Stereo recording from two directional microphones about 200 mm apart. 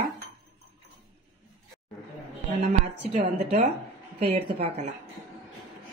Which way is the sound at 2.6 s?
35° right (ahead or behind).